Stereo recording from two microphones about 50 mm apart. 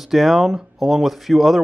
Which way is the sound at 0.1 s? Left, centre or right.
Centre.